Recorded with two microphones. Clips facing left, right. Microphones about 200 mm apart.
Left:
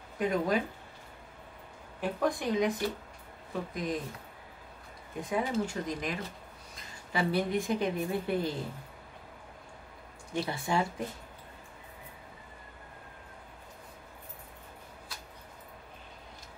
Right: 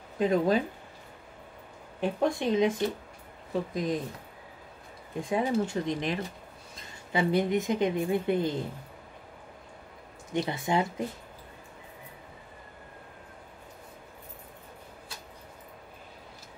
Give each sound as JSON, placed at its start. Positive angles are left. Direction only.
{"t": 0.2, "sound": "a woman's voice", "side_deg": -25}
{"t": 2.0, "sound": "a woman's voice", "side_deg": -25}
{"t": 5.3, "sound": "a woman's voice", "side_deg": -25}
{"t": 10.3, "sound": "a woman's voice", "side_deg": -20}